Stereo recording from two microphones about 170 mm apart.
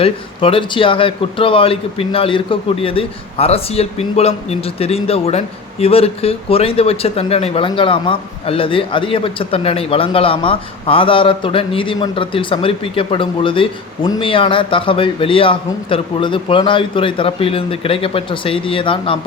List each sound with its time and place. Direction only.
0.0 s speech: 30° left (ahead or behind)